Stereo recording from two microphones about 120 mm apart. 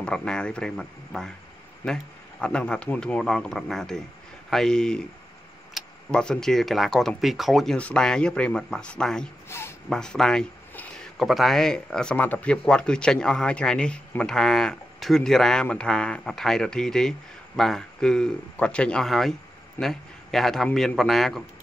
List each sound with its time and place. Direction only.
0.0 s a man's voice: 5° left (ahead or behind)
2.4 s a man's voice: 10° left (ahead or behind)
9.5 s speech: 20° left (ahead or behind)
9.8 s a man's voice: 5° left (ahead or behind)